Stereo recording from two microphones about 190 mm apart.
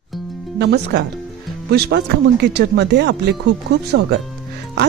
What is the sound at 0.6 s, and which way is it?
Speech, 60° right (ahead or behind).